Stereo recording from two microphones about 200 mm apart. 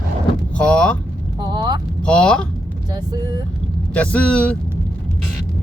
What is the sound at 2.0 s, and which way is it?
Speech, 5° left (ahead or behind).